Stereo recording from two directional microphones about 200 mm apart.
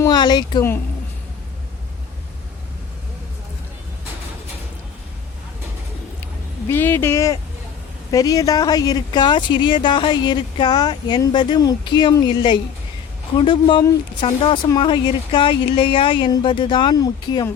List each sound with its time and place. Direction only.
0.0 s speech: 20° left (ahead or behind)
6.7 s speech: 10° left (ahead or behind)